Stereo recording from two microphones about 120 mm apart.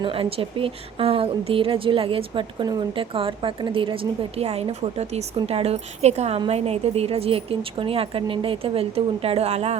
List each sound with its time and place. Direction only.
0.0 s a woman's voice: 50° right (ahead or behind)